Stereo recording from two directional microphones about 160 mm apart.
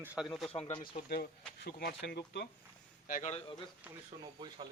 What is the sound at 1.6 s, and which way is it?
Speech, 90° left.